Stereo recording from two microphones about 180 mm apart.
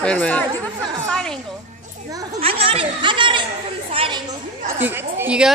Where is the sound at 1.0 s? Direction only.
5° left (ahead or behind).